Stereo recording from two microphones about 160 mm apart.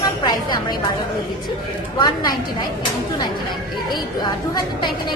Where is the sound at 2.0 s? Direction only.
25° left (ahead or behind).